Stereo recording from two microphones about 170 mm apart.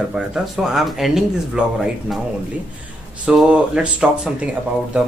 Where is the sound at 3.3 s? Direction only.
5° right (ahead or behind).